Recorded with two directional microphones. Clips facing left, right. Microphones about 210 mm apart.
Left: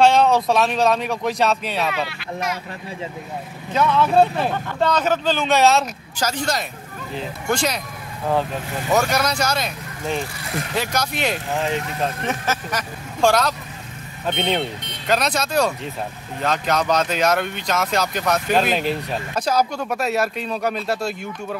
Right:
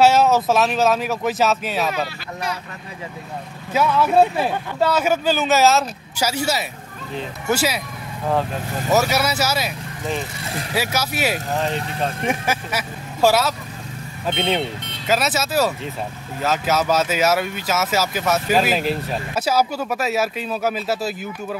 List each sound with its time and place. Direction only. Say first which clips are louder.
0.0 s speech: even; 5° right (ahead or behind)
2.0 s speech: left 1 dB; 30° right (ahead or behind)
3.7 s speech: even; 5° right (ahead or behind)
8.9 s speech: right 1 dB; 5° right (ahead or behind)